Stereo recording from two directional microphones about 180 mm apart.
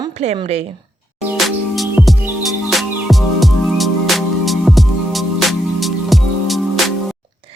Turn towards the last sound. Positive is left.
turn(degrees=0)  # may be behind; listen again after turning